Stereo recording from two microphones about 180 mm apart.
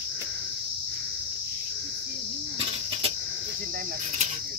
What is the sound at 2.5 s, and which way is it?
Cricket, 30° right (ahead or behind).